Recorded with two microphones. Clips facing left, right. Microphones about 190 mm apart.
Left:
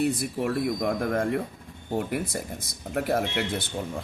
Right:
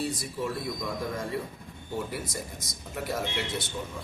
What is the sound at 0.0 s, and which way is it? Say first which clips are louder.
Speech: left 6 dB; 60° left (ahead or behind).